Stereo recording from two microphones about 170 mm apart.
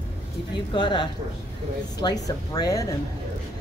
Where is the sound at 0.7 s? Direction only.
25° left (ahead or behind).